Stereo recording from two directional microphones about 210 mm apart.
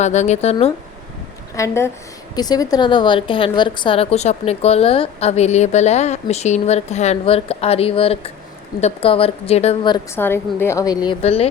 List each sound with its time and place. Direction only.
0.0 s speech: 35° left (ahead or behind)
1.5 s a woman's voice: 15° left (ahead or behind)
10.2 s a woman's voice: 10° left (ahead or behind); by 11.4 s 30° left (ahead or behind)